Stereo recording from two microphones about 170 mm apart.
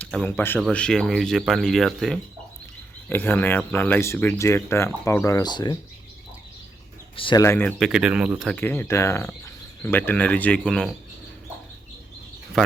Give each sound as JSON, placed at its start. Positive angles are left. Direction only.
{"t": 0.0, "sound": "speech", "side_deg": 5}
{"t": 3.1, "sound": "speech", "side_deg": 10}
{"t": 7.2, "sound": "speech", "side_deg": 30}
{"t": 7.4, "sound": "speech", "side_deg": 10}
{"t": 7.8, "sound": "speech", "side_deg": -5}
{"t": 8.5, "sound": "speech", "side_deg": 10}